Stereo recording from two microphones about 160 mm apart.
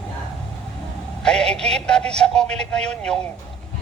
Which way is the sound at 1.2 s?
5° left (ahead or behind).